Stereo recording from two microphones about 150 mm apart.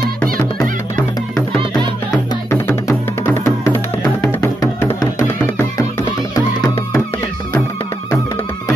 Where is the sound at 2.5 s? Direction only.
15° left (ahead or behind).